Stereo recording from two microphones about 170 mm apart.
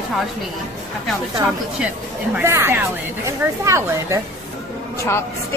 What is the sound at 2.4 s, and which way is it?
Speech, 15° right (ahead or behind).